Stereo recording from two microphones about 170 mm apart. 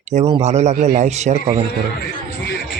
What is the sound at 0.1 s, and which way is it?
Speech, 40° right (ahead or behind).